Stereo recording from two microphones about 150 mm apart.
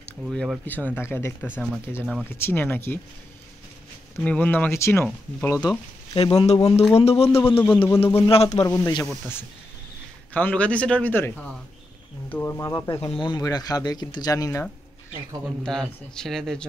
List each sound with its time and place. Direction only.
0.3 s speech: 5° left (ahead or behind)
4.2 s speech: 10° left (ahead or behind)
5.6 s speech: 30° left (ahead or behind)
7.6 s speech: 5° left (ahead or behind)
8.3 s speech: 40° left (ahead or behind)
8.6 s speech: 25° left (ahead or behind)
10.3 s speech: 10° left (ahead or behind)
13.0 s speech: 30° left (ahead or behind)
15.4 s a man's voice: centre (ahead or behind)